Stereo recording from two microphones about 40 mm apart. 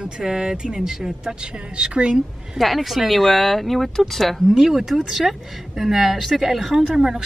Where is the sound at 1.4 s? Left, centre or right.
Right.